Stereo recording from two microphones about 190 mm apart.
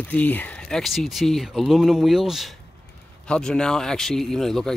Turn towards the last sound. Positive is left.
turn(degrees=0)  # may be behind; listen again after turning